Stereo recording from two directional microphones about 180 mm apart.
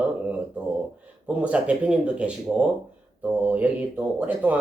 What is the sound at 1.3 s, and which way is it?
Speech, 5° right (ahead or behind).